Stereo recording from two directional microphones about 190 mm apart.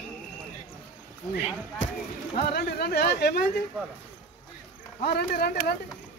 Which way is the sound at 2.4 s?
55° left (ahead or behind).